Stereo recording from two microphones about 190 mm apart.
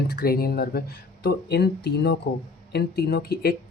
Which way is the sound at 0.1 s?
55° left (ahead or behind).